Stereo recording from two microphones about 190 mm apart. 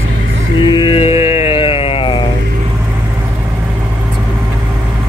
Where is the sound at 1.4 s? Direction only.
30° left (ahead or behind).